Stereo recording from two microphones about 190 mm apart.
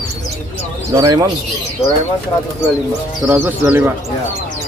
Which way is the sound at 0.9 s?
20° right (ahead or behind).